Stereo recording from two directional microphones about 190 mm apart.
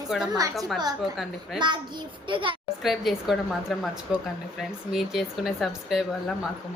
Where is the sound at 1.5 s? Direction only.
25° right (ahead or behind).